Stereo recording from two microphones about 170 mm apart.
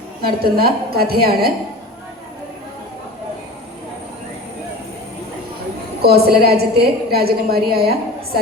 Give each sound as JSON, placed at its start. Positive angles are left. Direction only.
{"t": 0.5, "sound": "a woman's voice", "side_deg": -65}
{"t": 6.0, "sound": "a woman's voice", "side_deg": -70}